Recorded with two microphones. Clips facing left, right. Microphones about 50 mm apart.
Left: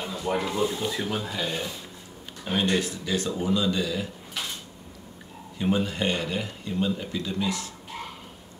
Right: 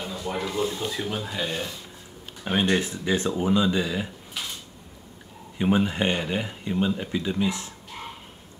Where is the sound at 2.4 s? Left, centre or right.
Centre.